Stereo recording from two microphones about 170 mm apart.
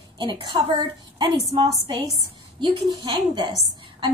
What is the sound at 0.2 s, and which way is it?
A woman's voice, 25° right (ahead or behind).